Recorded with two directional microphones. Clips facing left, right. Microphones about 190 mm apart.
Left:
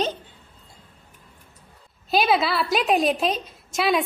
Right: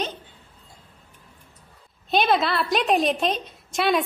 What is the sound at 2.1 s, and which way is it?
A woman's voice, 5° left (ahead or behind).